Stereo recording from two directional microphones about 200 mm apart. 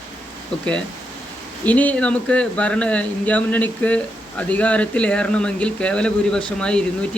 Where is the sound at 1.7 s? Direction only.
10° left (ahead or behind).